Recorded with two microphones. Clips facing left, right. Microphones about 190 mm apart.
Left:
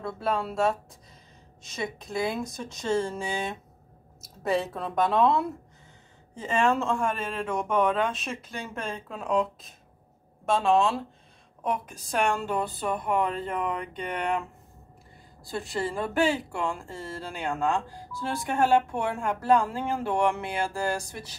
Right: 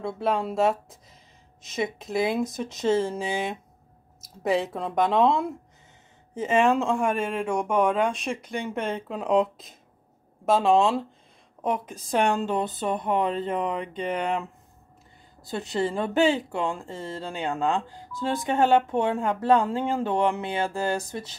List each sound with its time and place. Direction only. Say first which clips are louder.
0.0 s speech: right 3 dB; 20° right (ahead or behind)
10.6 s speech: right 2 dB; 20° right (ahead or behind)
12.1 s speech: right 3 dB; 20° right (ahead or behind)
15.4 s speech: right 4 dB; 20° right (ahead or behind)